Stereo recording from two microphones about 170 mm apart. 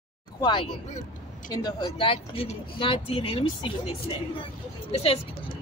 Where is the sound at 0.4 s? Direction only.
25° left (ahead or behind).